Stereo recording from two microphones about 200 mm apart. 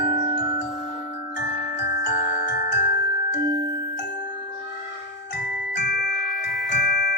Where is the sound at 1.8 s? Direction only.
50° left (ahead or behind).